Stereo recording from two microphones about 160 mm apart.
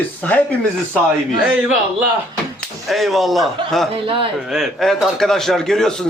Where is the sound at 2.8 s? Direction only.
Centre (ahead or behind).